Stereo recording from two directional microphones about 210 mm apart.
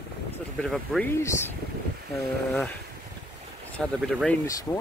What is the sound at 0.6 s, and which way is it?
Speech, centre (ahead or behind).